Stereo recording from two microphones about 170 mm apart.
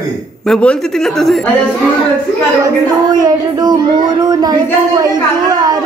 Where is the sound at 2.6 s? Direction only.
20° right (ahead or behind).